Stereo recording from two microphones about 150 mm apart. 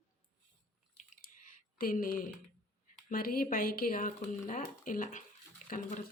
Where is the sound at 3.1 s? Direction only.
75° left (ahead or behind).